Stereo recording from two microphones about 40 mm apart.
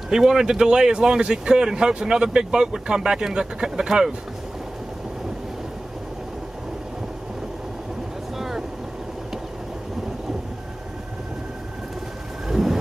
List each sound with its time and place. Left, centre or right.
0.1 s speech: centre
8.4 s vehicle: centre
12.4 s thunder: centre